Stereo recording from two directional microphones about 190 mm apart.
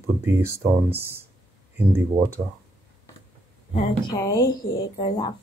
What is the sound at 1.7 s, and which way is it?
Speech, 15° right (ahead or behind).